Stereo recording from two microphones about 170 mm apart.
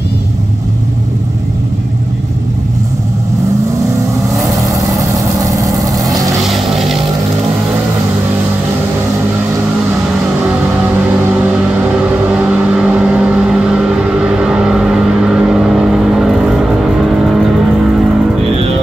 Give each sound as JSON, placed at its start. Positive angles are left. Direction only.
{"t": 5.4, "sound": "vehicle", "side_deg": -20}
{"t": 6.4, "sound": "vehicle", "side_deg": 0}
{"t": 11.2, "sound": "vehicle", "side_deg": -10}